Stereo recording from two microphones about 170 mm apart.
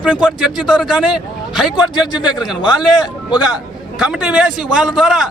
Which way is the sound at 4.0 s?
5° right (ahead or behind).